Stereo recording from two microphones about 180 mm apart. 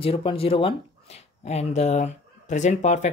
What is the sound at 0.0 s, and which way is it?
Speech, 30° left (ahead or behind).